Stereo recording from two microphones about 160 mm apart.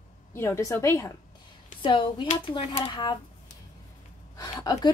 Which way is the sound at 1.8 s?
30° left (ahead or behind).